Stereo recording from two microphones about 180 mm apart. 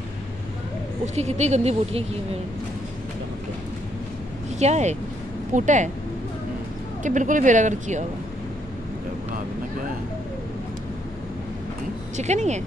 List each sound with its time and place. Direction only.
1.0 s speech: 40° right (ahead or behind)
4.6 s speech: 40° right (ahead or behind)
7.0 s speech: 45° right (ahead or behind)
12.2 s speech: 40° right (ahead or behind)